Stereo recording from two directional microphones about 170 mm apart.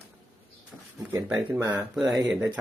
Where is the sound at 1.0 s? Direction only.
15° right (ahead or behind).